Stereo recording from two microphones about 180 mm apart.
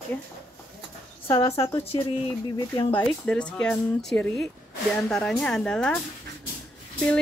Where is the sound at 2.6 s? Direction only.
25° left (ahead or behind).